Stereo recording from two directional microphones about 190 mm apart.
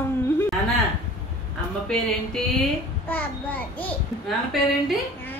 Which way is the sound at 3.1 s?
10° left (ahead or behind).